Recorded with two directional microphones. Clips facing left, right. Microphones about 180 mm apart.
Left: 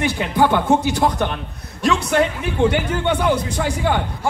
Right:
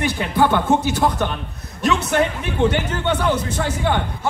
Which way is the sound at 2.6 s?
10° left (ahead or behind).